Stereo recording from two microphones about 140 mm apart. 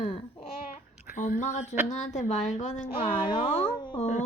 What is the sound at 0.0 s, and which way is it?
Babbling, 45° left (ahead or behind).